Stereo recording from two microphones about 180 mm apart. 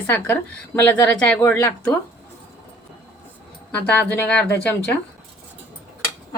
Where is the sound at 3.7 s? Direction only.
5° left (ahead or behind).